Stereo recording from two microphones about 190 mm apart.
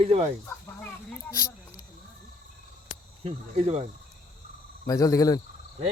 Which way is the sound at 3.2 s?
35° right (ahead or behind).